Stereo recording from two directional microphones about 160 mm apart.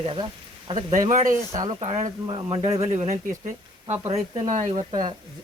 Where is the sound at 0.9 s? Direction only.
50° right (ahead or behind).